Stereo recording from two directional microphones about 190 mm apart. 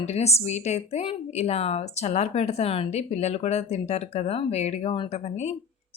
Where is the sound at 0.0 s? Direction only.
35° left (ahead or behind).